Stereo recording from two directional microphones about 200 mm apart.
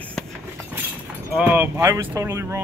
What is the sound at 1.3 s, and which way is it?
Speech, 10° right (ahead or behind).